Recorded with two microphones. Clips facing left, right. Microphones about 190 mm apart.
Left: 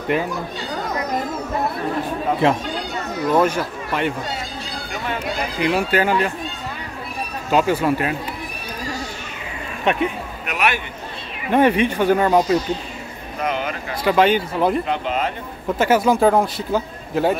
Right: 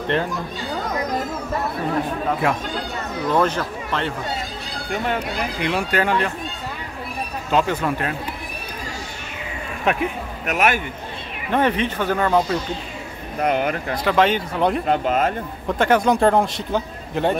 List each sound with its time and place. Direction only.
2.4 s speech: 25° left (ahead or behind)
3.3 s speech: 10° left (ahead or behind)
5.6 s speech: 5° left (ahead or behind)
7.5 s speech: 10° left (ahead or behind)
9.9 s speech: centre (ahead or behind)
10.4 s speech: 45° right (ahead or behind)
11.5 s speech: 10° left (ahead or behind)
13.4 s speech: 60° right (ahead or behind)
14.0 s speech: 5° left (ahead or behind)
14.9 s speech: 45° right (ahead or behind)
15.8 s speech: 5° left (ahead or behind)